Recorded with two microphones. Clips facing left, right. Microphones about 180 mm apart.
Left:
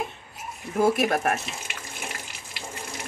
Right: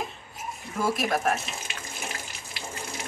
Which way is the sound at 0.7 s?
60° left (ahead or behind).